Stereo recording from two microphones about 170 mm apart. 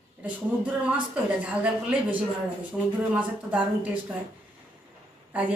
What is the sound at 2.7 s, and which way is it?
A woman's voice, centre (ahead or behind).